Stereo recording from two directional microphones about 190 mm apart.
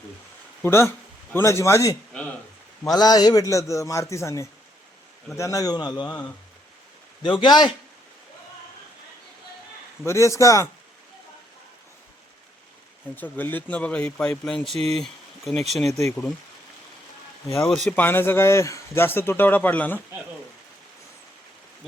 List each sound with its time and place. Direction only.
0.6 s speech: 15° left (ahead or behind)
6.1 s speech: 10° left (ahead or behind)
7.2 s speech: 25° left (ahead or behind)
10.1 s speech: 15° left (ahead or behind)
13.1 s speech: 10° left (ahead or behind)
17.7 s speech: centre (ahead or behind)